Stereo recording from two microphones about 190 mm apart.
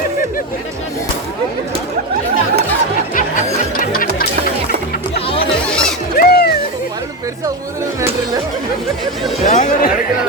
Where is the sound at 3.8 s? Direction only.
50° left (ahead or behind).